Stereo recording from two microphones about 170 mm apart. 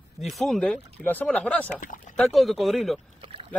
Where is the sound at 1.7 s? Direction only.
50° left (ahead or behind).